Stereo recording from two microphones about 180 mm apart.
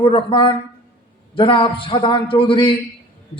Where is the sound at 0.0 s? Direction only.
30° left (ahead or behind).